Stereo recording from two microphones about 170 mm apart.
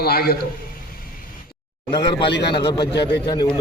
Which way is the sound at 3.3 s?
25° left (ahead or behind).